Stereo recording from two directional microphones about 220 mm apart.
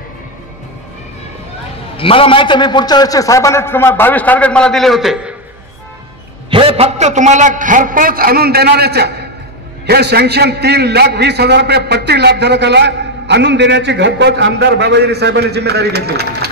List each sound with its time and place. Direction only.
2.0 s a man's voice: 25° left (ahead or behind); by 5.3 s centre (ahead or behind)
6.5 s a man's voice: 25° right (ahead or behind); by 16.4 s 50° right (ahead or behind)